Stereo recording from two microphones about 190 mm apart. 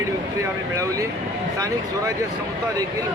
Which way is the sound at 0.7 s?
15° right (ahead or behind).